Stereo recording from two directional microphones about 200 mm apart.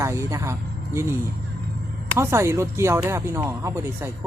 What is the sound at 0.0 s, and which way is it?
Speech, 15° right (ahead or behind).